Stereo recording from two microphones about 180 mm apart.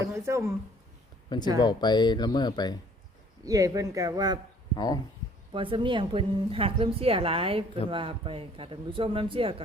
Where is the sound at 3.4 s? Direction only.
20° right (ahead or behind).